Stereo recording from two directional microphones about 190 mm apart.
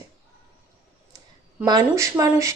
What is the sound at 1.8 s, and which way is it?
Speech, 15° right (ahead or behind).